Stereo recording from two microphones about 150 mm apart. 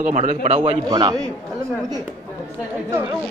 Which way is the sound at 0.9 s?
25° right (ahead or behind).